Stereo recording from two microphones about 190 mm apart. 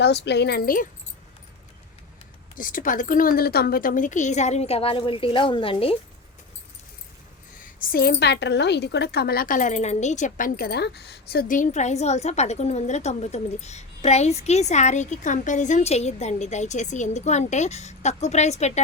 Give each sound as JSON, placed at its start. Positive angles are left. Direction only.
{"t": 0.0, "sound": "a woman's voice", "side_deg": 65}
{"t": 2.6, "sound": "a woman's voice", "side_deg": 45}
{"t": 7.6, "sound": "a woman's voice", "side_deg": 50}